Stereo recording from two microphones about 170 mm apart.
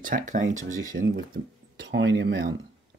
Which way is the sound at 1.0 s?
60° right (ahead or behind).